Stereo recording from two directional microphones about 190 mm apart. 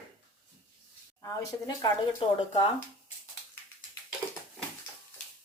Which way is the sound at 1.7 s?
25° left (ahead or behind).